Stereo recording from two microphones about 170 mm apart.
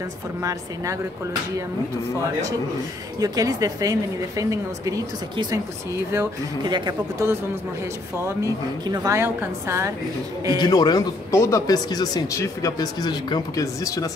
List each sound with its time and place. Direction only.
0.4 s a woman's voice: 20° right (ahead or behind)
3.2 s a woman's voice: 20° right (ahead or behind)
10.6 s speech: 25° left (ahead or behind)